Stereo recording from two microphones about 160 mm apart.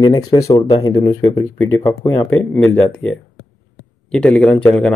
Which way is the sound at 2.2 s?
10° left (ahead or behind).